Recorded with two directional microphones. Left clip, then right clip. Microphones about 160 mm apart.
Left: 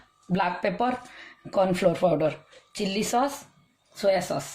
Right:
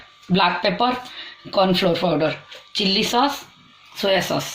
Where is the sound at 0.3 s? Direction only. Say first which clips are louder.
Right 7 dB; 45° left (ahead or behind).